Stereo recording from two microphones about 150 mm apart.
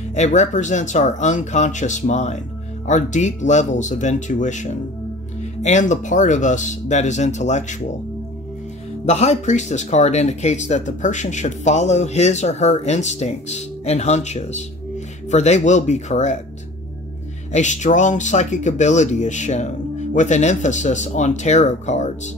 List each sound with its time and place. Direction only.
0.1 s speech: 50° left (ahead or behind)
9.0 s speech: 50° left (ahead or behind)
17.5 s speech: 55° left (ahead or behind)